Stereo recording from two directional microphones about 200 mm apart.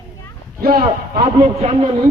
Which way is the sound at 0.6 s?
50° right (ahead or behind).